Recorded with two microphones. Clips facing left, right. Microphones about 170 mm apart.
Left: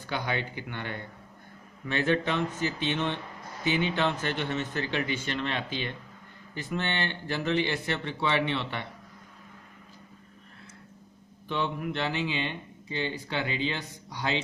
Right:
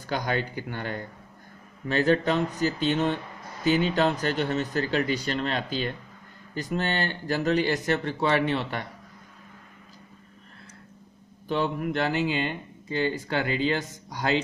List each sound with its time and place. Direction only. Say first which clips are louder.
0.0 s speech: right 4 dB; 40° right (ahead or behind)
11.4 s speech: right 4 dB; 40° right (ahead or behind)